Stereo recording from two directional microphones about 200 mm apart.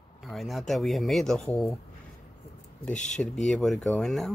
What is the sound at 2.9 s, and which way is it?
Speech, 35° left (ahead or behind).